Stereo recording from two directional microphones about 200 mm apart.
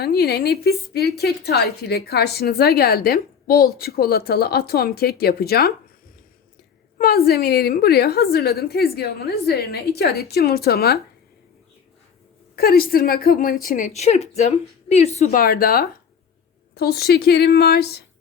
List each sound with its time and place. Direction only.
0.0 s a woman's voice: 50° left (ahead or behind)
7.0 s a woman's voice: 50° left (ahead or behind)
12.5 s a woman's voice: 50° left (ahead or behind)